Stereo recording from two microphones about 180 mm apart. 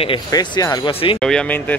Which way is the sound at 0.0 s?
25° left (ahead or behind).